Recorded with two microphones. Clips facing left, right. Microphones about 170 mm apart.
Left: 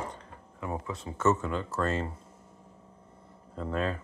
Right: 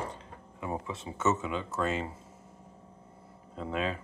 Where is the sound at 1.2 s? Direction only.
5° right (ahead or behind).